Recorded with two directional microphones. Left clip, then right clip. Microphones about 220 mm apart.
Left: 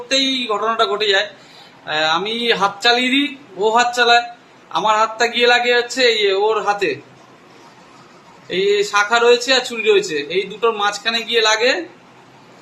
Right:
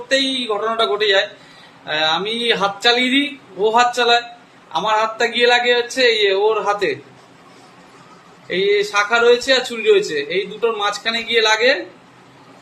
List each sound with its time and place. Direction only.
0.1 s a man's voice: 10° left (ahead or behind)
8.4 s a man's voice: 10° left (ahead or behind)